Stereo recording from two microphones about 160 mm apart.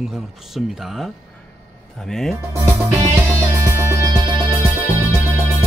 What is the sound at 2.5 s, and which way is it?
Music, 15° right (ahead or behind).